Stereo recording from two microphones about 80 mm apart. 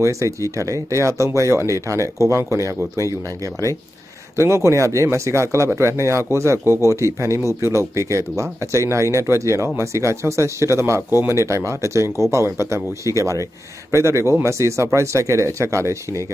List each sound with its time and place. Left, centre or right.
0.0 s speech: right
4.4 s speech: right